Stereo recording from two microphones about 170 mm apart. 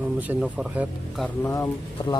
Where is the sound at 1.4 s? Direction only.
20° left (ahead or behind).